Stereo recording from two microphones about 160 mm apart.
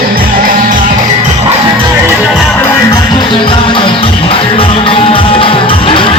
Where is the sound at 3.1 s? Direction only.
30° left (ahead or behind).